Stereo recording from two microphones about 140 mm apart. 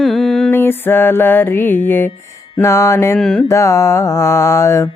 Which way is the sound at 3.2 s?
5° left (ahead or behind).